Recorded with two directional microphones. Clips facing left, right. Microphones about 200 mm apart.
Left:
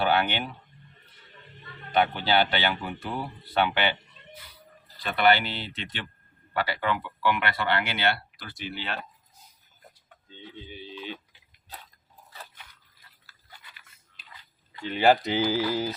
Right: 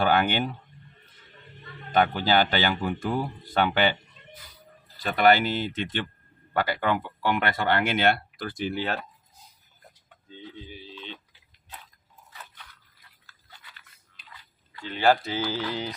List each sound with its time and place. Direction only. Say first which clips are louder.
0.0 s speech: right 2 dB; 45° right (ahead or behind)
1.9 s speech: right 2 dB; 45° right (ahead or behind)
5.0 s speech: right 3 dB; 45° right (ahead or behind)
14.8 s speech: left 1 dB; 15° left (ahead or behind)